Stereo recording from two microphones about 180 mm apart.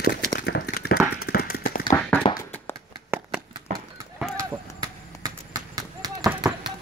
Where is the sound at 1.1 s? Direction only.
60° left (ahead or behind).